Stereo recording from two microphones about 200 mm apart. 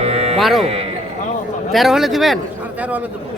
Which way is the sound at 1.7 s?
Centre (ahead or behind).